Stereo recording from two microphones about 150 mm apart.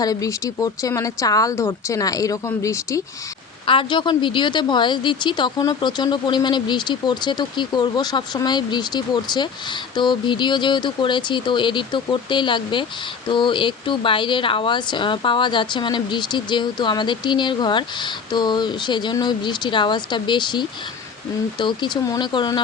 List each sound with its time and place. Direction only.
0.0 s speech: 25° left (ahead or behind)
3.7 s speech: 35° left (ahead or behind)